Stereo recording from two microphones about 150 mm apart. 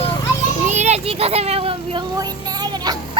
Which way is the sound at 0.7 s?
50° right (ahead or behind).